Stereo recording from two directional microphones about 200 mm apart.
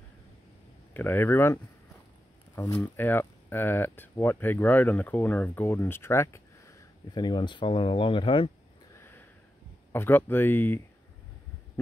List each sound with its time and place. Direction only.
0.9 s speech: 10° left (ahead or behind); by 8.5 s 25° left (ahead or behind)
9.9 s speech: 10° left (ahead or behind)